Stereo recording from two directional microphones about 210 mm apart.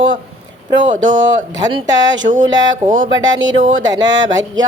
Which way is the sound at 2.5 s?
20° right (ahead or behind).